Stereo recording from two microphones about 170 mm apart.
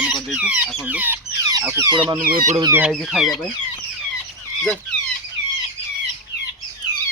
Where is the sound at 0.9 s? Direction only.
10° right (ahead or behind).